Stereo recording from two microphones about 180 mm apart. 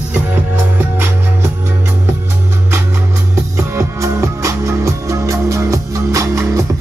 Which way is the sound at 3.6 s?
15° right (ahead or behind).